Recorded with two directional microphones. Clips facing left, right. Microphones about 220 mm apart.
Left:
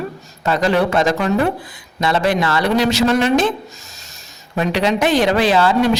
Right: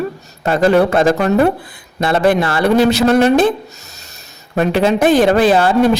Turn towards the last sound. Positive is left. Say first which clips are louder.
# right 3 dB
turn(degrees=-50)  # may be behind; listen again after turning